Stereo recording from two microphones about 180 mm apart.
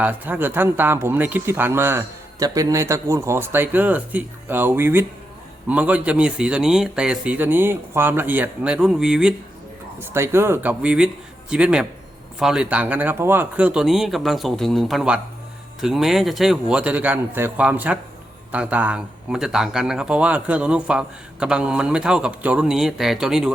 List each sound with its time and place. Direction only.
0.0 s speech: 10° right (ahead or behind)